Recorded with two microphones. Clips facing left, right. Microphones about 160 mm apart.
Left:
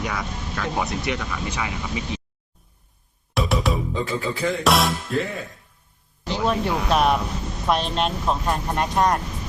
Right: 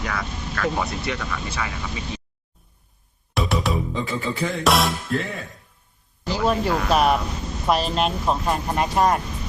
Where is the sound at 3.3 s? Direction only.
Centre (ahead or behind).